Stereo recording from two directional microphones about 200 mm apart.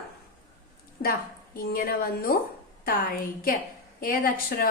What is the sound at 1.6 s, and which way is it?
Speech, 50° left (ahead or behind).